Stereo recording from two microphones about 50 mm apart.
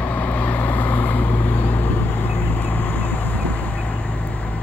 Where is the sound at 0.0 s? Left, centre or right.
Left.